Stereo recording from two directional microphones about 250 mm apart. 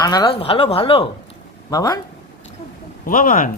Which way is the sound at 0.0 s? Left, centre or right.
Centre.